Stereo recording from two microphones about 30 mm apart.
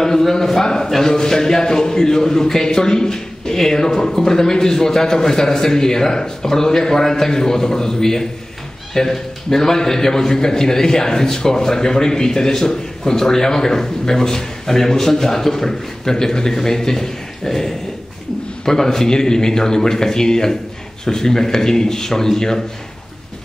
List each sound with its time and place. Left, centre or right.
0.0 s a man's voice: centre